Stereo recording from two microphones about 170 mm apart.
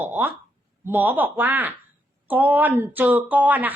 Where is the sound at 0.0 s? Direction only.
10° right (ahead or behind).